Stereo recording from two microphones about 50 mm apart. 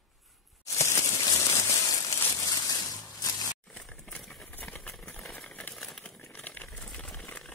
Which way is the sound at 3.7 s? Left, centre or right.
Centre.